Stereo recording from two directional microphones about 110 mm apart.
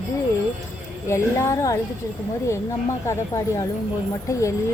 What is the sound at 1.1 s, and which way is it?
Speech, 25° left (ahead or behind).